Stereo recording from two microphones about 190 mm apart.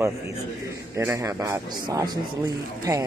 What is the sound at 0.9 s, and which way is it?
A man's voice, 15° right (ahead or behind).